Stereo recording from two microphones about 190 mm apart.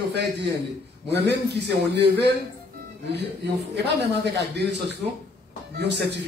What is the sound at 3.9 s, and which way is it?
Speech, 60° right (ahead or behind).